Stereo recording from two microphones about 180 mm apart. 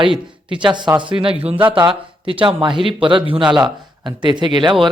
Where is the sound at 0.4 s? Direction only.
25° right (ahead or behind).